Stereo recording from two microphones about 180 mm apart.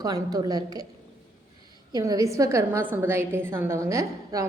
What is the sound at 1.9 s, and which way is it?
A woman's voice, 20° right (ahead or behind).